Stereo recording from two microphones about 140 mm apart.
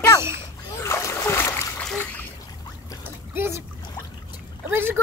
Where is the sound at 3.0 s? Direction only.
15° right (ahead or behind).